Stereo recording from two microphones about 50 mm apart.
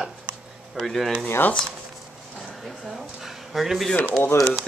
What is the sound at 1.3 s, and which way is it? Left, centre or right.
Speech, left.